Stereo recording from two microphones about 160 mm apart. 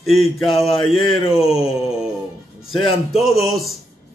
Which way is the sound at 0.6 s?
35° left (ahead or behind).